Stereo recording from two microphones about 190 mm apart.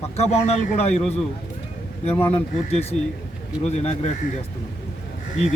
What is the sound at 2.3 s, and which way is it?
A man's voice, 30° left (ahead or behind).